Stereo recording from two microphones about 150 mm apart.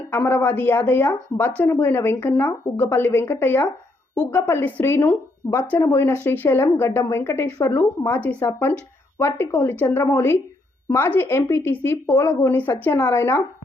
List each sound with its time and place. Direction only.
0.1 s speech: 15° left (ahead or behind)